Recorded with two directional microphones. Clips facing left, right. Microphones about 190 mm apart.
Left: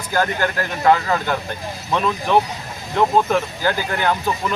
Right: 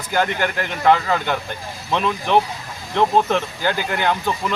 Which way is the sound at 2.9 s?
10° left (ahead or behind).